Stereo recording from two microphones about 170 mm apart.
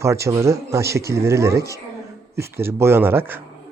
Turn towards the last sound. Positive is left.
turn(degrees=-15)  # may be behind; listen again after turning